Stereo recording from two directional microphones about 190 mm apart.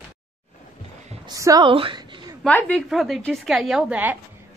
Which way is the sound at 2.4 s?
5° left (ahead or behind).